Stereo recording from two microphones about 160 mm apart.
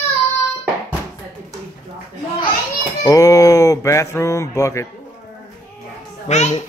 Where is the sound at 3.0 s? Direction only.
20° left (ahead or behind).